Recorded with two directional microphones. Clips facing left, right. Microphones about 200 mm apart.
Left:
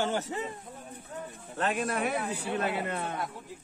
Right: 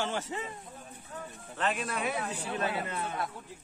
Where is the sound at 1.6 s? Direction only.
45° left (ahead or behind).